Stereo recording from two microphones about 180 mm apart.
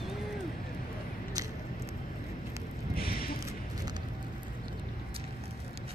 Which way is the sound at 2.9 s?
55° left (ahead or behind).